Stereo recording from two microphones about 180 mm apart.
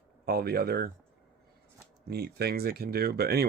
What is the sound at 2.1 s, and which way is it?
Speech, 60° right (ahead or behind).